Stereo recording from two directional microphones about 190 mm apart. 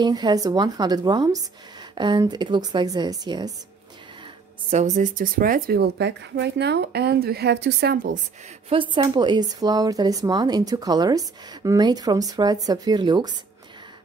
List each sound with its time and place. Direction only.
0.0 s speech: 20° right (ahead or behind)
4.6 s speech: 40° right (ahead or behind)
8.9 s speech: 25° right (ahead or behind)